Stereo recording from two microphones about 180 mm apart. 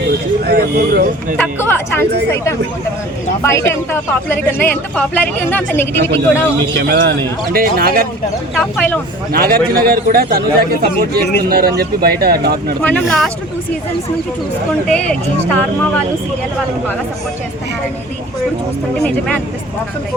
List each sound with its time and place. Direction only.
0.4 s speech: 60° right (ahead or behind)
1.4 s speech: 10° left (ahead or behind)
3.4 s speech: 15° left (ahead or behind)
6.7 s speech: 65° right (ahead or behind)
8.5 s speech: 10° left (ahead or behind)
9.3 s speech: 55° right (ahead or behind)
12.8 s speech: 5° left (ahead or behind)
14.7 s speech: 5° left (ahead or behind)